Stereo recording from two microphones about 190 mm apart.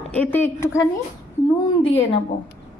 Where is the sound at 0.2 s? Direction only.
10° left (ahead or behind).